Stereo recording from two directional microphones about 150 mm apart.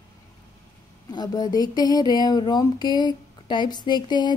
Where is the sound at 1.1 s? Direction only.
25° left (ahead or behind).